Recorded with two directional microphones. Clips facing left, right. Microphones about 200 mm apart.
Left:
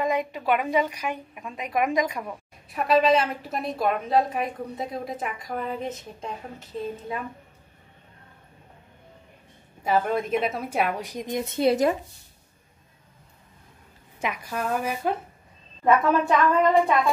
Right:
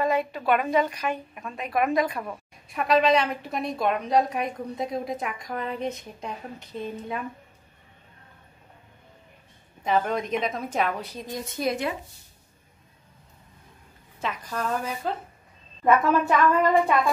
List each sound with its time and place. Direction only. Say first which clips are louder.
0.0 s a woman's voice: right 1 dB; 15° left (ahead or behind)
9.8 s a woman's voice: left 1 dB; 5° left (ahead or behind); by 11.7 s 25° left (ahead or behind)
11.7 s speech: left 7 dB; 40° left (ahead or behind)
14.2 s a woman's voice: left 1 dB; 10° left (ahead or behind)
15.8 s a woman's voice: even; centre (ahead or behind)